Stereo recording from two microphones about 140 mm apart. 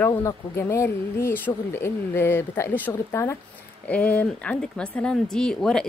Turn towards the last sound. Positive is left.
turn(degrees=5)  # may be behind; listen again after turning